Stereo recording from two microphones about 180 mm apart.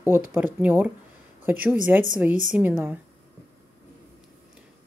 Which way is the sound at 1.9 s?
5° right (ahead or behind).